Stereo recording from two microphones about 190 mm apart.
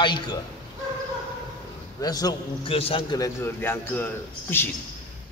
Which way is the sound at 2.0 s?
20° left (ahead or behind).